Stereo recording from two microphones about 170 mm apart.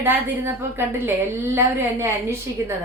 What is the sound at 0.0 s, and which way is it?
A woman's voice, 10° right (ahead or behind).